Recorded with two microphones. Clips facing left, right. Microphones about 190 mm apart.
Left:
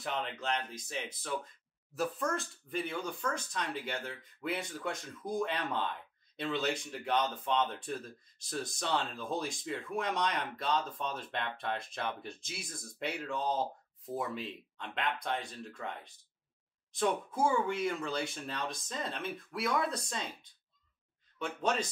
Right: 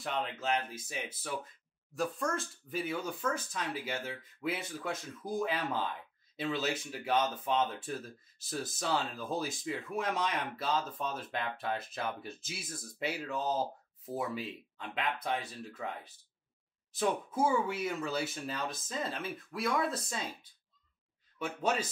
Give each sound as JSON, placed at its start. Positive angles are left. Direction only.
{"t": 0.0, "sound": "speech", "side_deg": 0}
{"t": 21.4, "sound": "speech", "side_deg": -5}